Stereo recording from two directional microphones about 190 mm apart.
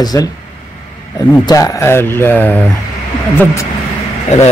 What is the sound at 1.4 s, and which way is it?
Speech, 20° left (ahead or behind).